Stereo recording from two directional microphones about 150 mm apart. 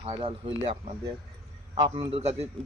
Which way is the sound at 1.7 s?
35° right (ahead or behind).